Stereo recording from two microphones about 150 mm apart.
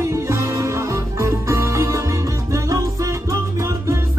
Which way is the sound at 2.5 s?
20° right (ahead or behind).